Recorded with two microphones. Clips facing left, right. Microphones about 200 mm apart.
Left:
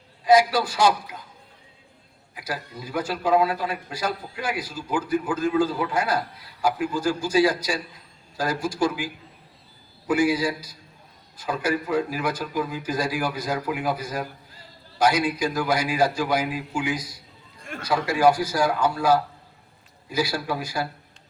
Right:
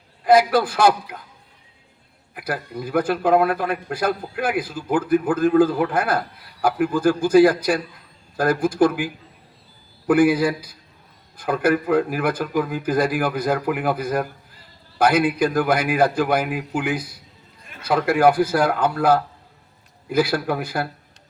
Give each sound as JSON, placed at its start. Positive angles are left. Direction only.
{"t": 0.3, "sound": "a man's voice", "side_deg": -55}
{"t": 2.3, "sound": "a man's voice", "side_deg": -55}
{"t": 10.1, "sound": "a man's voice", "side_deg": -55}